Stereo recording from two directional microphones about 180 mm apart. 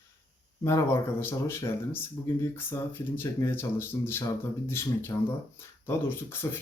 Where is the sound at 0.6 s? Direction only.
15° left (ahead or behind).